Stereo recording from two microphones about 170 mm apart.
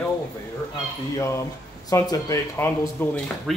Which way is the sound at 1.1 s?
15° left (ahead or behind).